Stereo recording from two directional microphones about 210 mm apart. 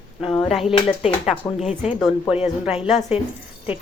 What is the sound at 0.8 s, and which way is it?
Speech, 30° left (ahead or behind).